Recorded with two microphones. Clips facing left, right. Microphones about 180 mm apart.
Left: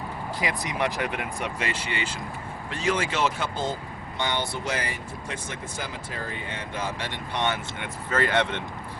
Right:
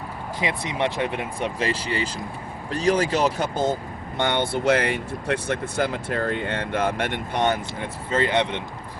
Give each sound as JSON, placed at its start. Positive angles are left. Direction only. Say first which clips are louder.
{"t": 0.3, "sound": "speech", "louder": "right 3 dB", "side_deg": -25}
{"t": 4.2, "sound": "speech", "louder": "right 6 dB", "side_deg": -55}
{"t": 8.1, "sound": "speech", "louder": "right 2 dB", "side_deg": -20}